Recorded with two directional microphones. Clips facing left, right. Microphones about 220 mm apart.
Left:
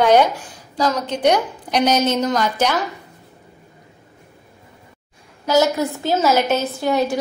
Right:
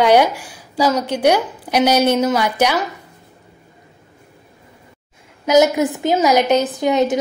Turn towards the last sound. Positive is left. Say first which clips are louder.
# right 3 dB
turn(degrees=-20)  # may be behind; listen again after turning